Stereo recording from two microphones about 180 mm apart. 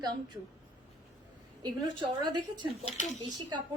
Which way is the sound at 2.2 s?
25° right (ahead or behind).